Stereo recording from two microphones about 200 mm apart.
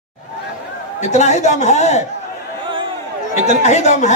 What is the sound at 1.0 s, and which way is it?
A man's voice, 35° left (ahead or behind).